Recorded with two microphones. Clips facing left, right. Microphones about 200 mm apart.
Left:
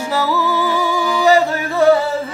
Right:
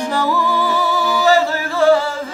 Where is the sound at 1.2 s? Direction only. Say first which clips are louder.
Left 2 dB; 15° left (ahead or behind).